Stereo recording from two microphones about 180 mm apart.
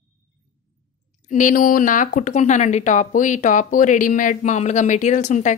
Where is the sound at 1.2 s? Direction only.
45° left (ahead or behind).